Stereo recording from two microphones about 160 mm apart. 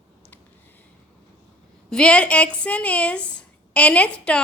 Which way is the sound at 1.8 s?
5° left (ahead or behind).